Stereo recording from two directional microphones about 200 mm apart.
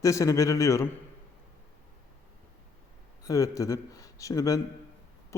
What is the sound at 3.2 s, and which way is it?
Speech, 15° left (ahead or behind).